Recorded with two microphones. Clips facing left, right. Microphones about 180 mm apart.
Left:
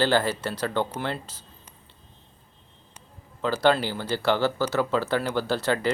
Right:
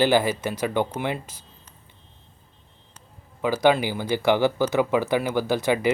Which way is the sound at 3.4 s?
10° right (ahead or behind).